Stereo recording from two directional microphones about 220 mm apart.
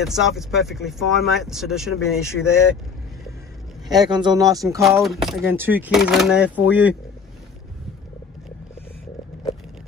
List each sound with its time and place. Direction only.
0.0 s speech: centre (ahead or behind)
4.0 s speech: 20° right (ahead or behind)
4.8 s speech: centre (ahead or behind)